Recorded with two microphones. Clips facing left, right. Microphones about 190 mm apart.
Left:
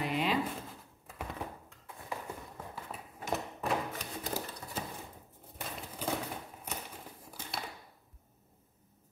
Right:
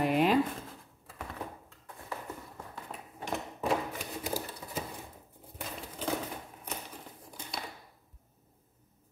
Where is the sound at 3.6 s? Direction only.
5° right (ahead or behind).